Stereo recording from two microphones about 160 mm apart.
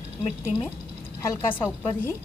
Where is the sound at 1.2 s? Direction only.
15° left (ahead or behind).